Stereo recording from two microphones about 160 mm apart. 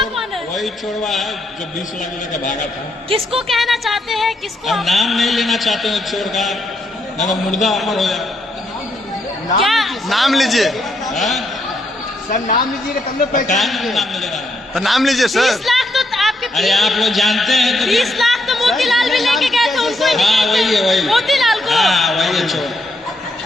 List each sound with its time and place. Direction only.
0.0 s a sound: centre (ahead or behind)
2.3 s a man's voice: 50° left (ahead or behind)
3.1 s speech: 35° right (ahead or behind)
3.4 s music: centre (ahead or behind)
9.6 s a man's voice: centre (ahead or behind)
13.6 s music: centre (ahead or behind)
14.8 s a man's voice: centre (ahead or behind)